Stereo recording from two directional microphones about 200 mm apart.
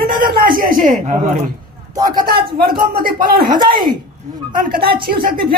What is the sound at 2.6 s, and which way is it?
A woman's voice, 45° right (ahead or behind).